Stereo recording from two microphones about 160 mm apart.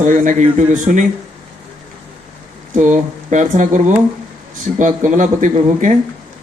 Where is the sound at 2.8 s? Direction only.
50° right (ahead or behind).